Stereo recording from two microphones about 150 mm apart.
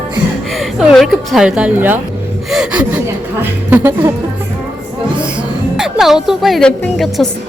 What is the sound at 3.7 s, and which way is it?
Speech, 15° right (ahead or behind).